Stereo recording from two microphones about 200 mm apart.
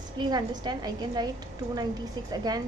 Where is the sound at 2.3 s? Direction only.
20° right (ahead or behind).